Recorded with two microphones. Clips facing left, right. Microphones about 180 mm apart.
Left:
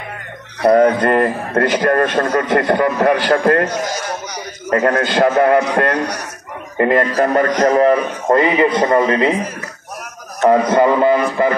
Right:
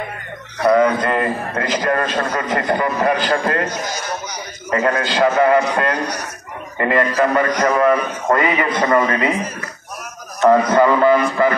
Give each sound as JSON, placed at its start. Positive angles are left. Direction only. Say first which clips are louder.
{"t": 0.7, "sound": "a man's voice", "louder": "left 6 dB", "side_deg": 50}
{"t": 4.6, "sound": "a man's voice", "louder": "left 3 dB", "side_deg": 55}
{"t": 6.8, "sound": "a man's voice", "louder": "left 2 dB", "side_deg": 40}
{"t": 10.4, "sound": "a man's voice", "louder": "left 1 dB", "side_deg": 20}